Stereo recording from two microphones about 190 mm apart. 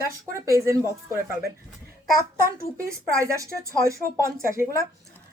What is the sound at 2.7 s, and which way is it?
Speech, 15° right (ahead or behind).